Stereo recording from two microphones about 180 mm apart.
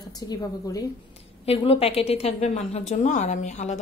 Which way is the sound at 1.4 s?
35° left (ahead or behind).